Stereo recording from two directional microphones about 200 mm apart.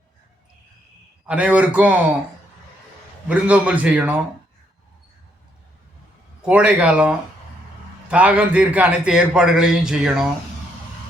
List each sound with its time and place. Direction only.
1.3 s a man's voice: 5° right (ahead or behind)
3.2 s a man's voice: 5° right (ahead or behind)
6.4 s a man's voice: 5° right (ahead or behind)